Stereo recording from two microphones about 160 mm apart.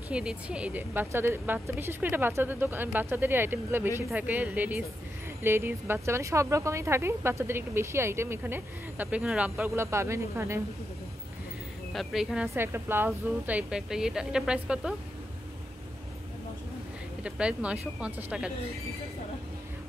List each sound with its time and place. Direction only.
0.1 s speech: 5° right (ahead or behind)
11.9 s speech: centre (ahead or behind)
12.5 s speech: 15° right (ahead or behind)
17.2 s speech: 5° right (ahead or behind)